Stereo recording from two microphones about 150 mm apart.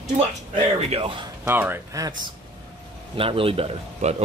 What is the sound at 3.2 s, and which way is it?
Speech, 40° right (ahead or behind).